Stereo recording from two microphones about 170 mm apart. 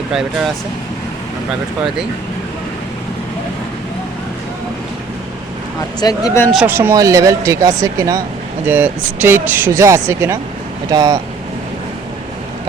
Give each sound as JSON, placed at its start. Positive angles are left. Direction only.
{"t": 0.1, "sound": "speech", "side_deg": -5}
{"t": 6.0, "sound": "speech", "side_deg": 20}
{"t": 6.7, "sound": "speech", "side_deg": -15}